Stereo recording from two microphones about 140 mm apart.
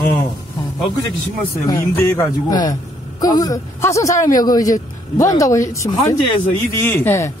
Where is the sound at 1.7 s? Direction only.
20° left (ahead or behind).